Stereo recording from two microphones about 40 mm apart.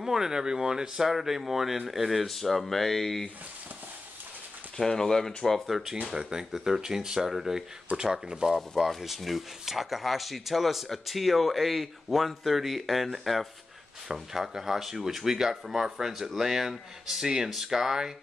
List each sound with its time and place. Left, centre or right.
0.0 s speech: centre
1.1 s speech: centre
4.7 s speech: centre
5.7 s speech: centre
8.5 s speech: centre